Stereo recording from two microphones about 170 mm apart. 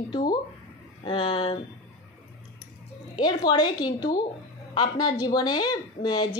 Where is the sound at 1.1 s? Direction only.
30° left (ahead or behind).